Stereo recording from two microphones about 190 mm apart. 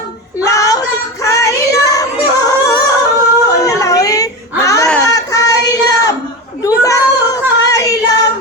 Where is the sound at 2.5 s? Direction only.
20° left (ahead or behind).